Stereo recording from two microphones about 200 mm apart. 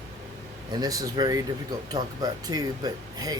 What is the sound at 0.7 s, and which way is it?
Speech, 20° right (ahead or behind).